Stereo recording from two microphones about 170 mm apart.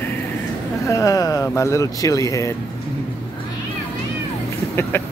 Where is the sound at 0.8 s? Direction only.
20° left (ahead or behind).